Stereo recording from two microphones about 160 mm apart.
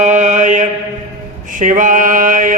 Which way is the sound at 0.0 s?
50° right (ahead or behind).